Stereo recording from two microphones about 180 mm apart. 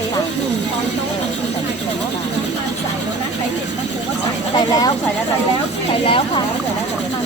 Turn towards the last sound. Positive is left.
turn(degrees=30)  # may be behind; listen again after turning